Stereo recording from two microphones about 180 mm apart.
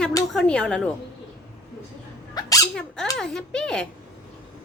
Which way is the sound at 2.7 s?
5° left (ahead or behind).